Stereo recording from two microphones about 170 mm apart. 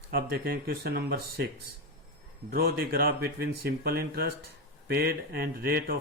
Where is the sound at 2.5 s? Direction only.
65° right (ahead or behind).